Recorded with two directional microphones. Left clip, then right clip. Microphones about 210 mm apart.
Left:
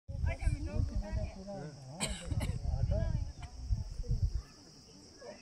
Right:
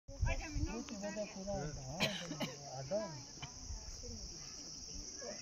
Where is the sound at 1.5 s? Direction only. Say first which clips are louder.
Right 3 dB; 40° right (ahead or behind).